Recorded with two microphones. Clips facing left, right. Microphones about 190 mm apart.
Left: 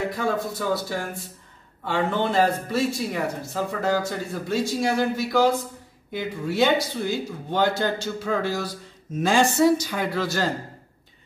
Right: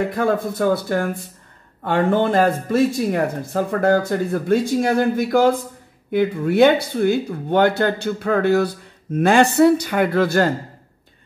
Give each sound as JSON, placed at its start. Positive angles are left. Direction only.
{"t": 0.1, "sound": "speech", "side_deg": -55}